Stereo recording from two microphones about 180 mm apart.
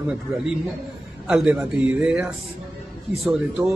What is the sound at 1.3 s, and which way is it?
A man's voice, 5° right (ahead or behind).